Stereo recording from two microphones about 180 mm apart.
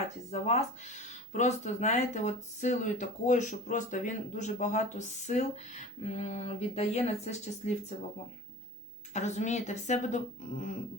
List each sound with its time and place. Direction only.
0.3 s speech: 35° left (ahead or behind)
9.1 s speech: 40° left (ahead or behind)